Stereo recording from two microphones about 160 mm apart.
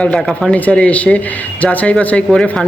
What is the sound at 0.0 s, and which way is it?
Speech, 5° left (ahead or behind).